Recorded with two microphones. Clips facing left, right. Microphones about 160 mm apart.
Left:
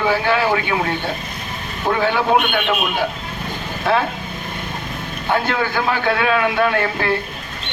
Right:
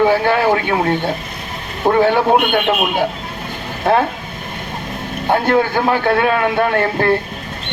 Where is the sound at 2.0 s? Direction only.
50° right (ahead or behind).